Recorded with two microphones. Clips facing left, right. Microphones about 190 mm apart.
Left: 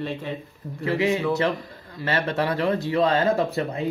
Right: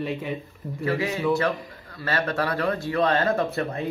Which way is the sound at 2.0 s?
20° left (ahead or behind).